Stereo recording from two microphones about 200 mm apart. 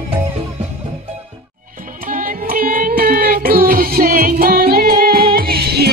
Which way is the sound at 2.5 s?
45° right (ahead or behind).